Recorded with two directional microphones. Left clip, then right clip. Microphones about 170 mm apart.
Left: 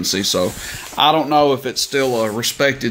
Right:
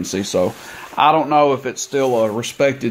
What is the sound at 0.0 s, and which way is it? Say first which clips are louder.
Speech: left 1 dB; 5° right (ahead or behind).